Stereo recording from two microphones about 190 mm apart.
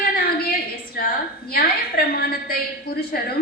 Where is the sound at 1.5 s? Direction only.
55° left (ahead or behind).